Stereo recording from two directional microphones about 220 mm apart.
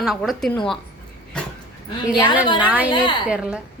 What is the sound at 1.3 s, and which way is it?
Dog, 5° left (ahead or behind).